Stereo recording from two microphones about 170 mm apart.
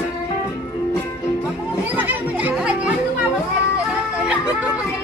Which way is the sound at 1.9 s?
10° right (ahead or behind).